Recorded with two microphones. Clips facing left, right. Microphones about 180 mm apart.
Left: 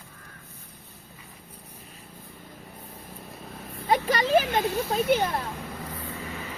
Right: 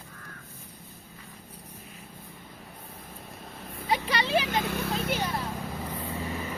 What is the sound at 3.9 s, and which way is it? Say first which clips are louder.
Speech: left 5 dB; 45° left (ahead or behind).